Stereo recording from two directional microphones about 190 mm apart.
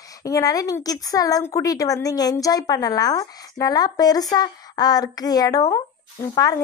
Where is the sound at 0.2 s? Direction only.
20° left (ahead or behind).